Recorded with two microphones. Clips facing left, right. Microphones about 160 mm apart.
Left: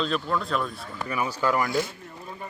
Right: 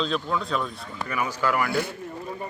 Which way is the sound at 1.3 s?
15° left (ahead or behind).